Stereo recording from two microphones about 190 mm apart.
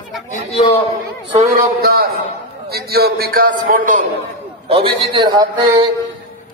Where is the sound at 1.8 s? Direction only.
55° right (ahead or behind).